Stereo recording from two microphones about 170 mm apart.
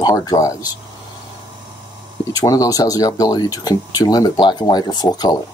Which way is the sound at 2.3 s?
20° left (ahead or behind).